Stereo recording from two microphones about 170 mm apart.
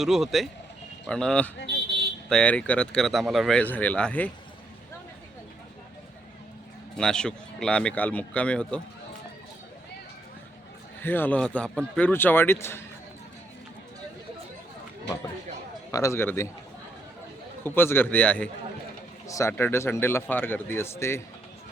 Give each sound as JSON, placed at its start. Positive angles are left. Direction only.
{"t": 0.0, "sound": "speech", "side_deg": 0}
{"t": 6.9, "sound": "speech", "side_deg": 5}
{"t": 11.0, "sound": "speech", "side_deg": 10}
{"t": 15.9, "sound": "speech", "side_deg": 20}
{"t": 17.6, "sound": "speech", "side_deg": 10}